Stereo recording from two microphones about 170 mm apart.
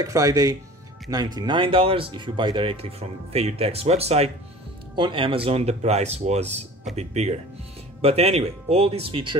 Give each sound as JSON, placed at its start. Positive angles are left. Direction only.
{"t": 0.0, "sound": "speech", "side_deg": -20}